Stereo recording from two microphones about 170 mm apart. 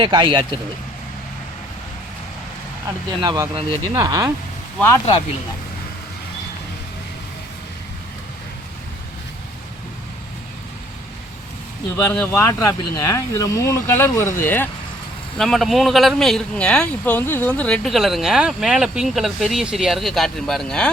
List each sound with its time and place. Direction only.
0.0 s speech: 30° right (ahead or behind)
3.2 s speech: 20° right (ahead or behind)
12.1 s speech: 10° left (ahead or behind)
15.4 s speech: centre (ahead or behind)